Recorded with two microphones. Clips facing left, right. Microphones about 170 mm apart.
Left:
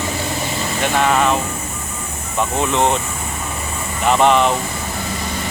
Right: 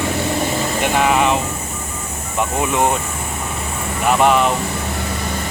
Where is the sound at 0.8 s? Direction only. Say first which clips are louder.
Even; 10° right (ahead or behind).